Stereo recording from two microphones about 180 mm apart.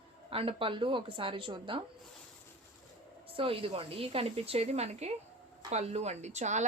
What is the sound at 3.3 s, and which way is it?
A woman's voice, 30° right (ahead or behind).